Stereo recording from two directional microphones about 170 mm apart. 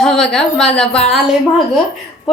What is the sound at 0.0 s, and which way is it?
A woman's voice, 5° left (ahead or behind).